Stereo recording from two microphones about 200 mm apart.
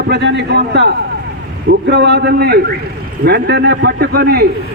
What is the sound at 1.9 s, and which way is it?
A man's voice, 55° right (ahead or behind).